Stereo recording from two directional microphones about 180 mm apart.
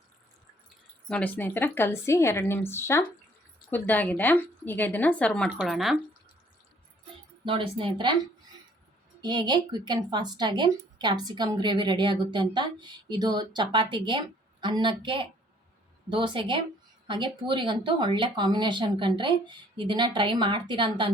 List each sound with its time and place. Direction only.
1.0 s a woman's voice: 5° left (ahead or behind)
7.4 s speech: 30° right (ahead or behind)
9.2 s speech: 25° right (ahead or behind)